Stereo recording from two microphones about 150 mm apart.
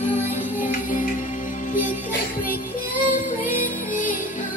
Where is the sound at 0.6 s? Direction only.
60° left (ahead or behind).